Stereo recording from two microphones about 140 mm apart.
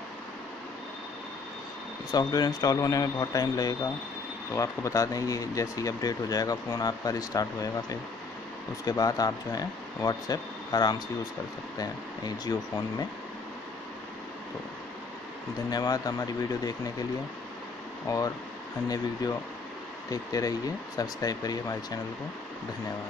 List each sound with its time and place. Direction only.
2.0 s speech: 30° left (ahead or behind)
15.7 s speech: 25° left (ahead or behind)
18.0 s speech: 25° left (ahead or behind)
20.1 s speech: 25° left (ahead or behind)